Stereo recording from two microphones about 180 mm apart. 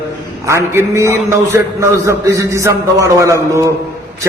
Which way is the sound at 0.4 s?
15° right (ahead or behind).